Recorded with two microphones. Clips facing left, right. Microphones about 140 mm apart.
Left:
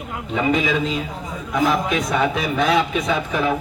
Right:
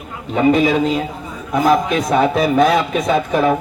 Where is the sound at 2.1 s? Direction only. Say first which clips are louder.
Right 6 dB; 40° right (ahead or behind).